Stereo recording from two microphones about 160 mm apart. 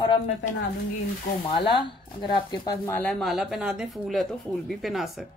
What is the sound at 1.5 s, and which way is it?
Speech, 35° left (ahead or behind).